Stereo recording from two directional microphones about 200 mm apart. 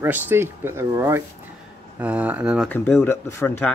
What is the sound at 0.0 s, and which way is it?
Speech, 10° right (ahead or behind).